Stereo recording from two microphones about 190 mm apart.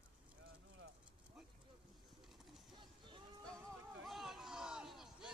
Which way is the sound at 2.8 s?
25° right (ahead or behind).